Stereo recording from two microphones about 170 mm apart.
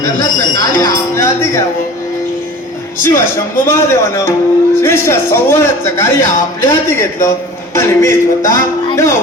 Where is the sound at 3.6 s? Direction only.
15° left (ahead or behind).